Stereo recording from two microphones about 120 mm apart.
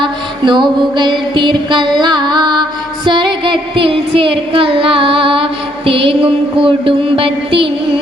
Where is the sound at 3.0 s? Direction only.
40° right (ahead or behind).